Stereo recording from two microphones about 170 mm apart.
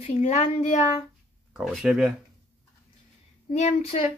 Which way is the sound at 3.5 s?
40° left (ahead or behind).